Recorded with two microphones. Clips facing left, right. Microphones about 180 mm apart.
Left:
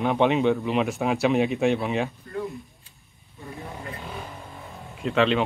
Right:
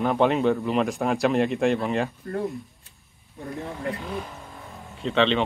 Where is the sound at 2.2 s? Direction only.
50° right (ahead or behind).